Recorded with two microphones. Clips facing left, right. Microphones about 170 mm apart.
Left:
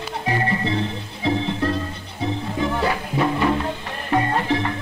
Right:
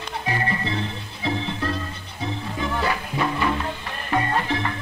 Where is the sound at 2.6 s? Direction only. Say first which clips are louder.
Left 3 dB; 30° left (ahead or behind).